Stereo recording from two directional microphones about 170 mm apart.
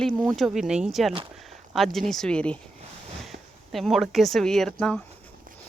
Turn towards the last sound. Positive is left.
turn(degrees=5)  # may be behind; listen again after turning